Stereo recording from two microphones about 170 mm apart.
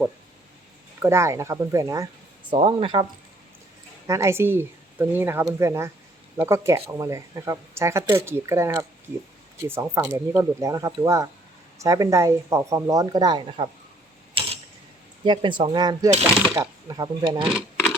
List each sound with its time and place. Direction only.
1.0 s speech: 15° right (ahead or behind)
2.5 s speech: 30° right (ahead or behind)
4.0 s speech: 20° right (ahead or behind)
15.2 s speech: 30° right (ahead or behind)